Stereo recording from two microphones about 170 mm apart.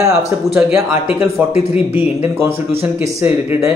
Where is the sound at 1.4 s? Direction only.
10° right (ahead or behind).